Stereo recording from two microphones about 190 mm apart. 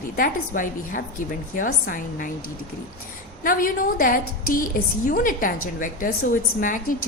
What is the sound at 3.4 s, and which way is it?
A woman's voice, 45° left (ahead or behind).